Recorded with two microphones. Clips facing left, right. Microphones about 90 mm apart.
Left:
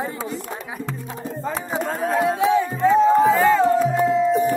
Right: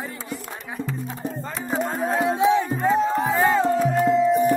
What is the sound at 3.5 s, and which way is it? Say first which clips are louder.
Music: left 2 dB; centre (ahead or behind).